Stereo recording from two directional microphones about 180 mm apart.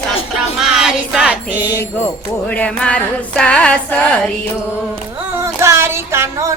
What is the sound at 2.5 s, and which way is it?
Female singing, 5° left (ahead or behind).